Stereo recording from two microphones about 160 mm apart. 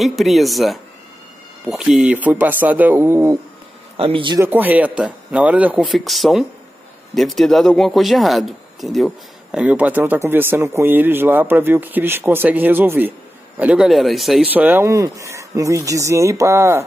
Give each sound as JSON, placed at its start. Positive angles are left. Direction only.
{"t": 0.0, "sound": "speech", "side_deg": 0}
{"t": 3.9, "sound": "a man's voice", "side_deg": -35}
{"t": 4.4, "sound": "speech", "side_deg": -10}